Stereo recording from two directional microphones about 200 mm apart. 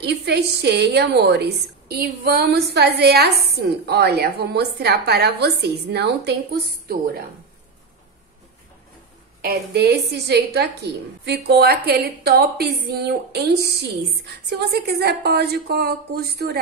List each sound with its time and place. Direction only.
0.0 s a woman's voice: 55° right (ahead or behind)
9.4 s a woman's voice: 55° right (ahead or behind)